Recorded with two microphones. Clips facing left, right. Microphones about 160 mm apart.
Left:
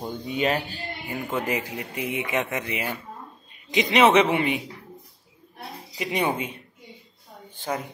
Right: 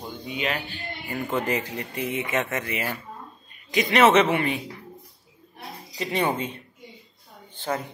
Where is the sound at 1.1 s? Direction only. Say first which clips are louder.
Right 1 dB; 10° left (ahead or behind).